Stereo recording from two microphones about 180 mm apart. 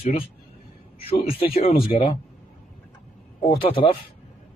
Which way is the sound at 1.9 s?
35° left (ahead or behind).